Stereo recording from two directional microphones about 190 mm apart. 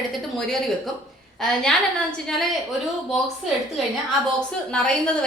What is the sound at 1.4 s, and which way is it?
Speech, 5° left (ahead or behind).